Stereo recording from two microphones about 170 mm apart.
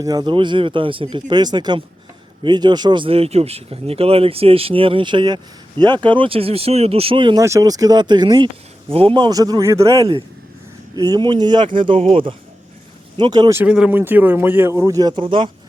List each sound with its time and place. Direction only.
0.0 s speech: 25° right (ahead or behind)
13.6 s speech: 5° right (ahead or behind); by 15.4 s 30° right (ahead or behind)